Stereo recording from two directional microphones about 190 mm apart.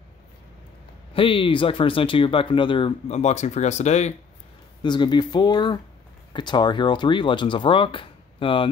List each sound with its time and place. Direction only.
1.1 s speech: 25° left (ahead or behind)
4.8 s speech: 25° left (ahead or behind)